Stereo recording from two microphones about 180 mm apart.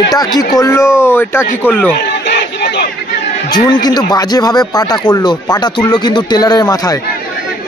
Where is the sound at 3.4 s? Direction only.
20° left (ahead or behind).